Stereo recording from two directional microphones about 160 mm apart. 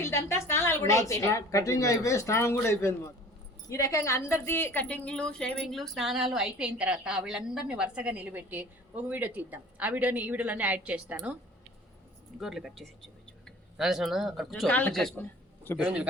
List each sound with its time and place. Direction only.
0.0 s a woman's voice: 15° left (ahead or behind); by 11.3 s 10° right (ahead or behind)
12.4 s a woman's voice: 5° right (ahead or behind)
15.8 s a man's voice: 10° right (ahead or behind)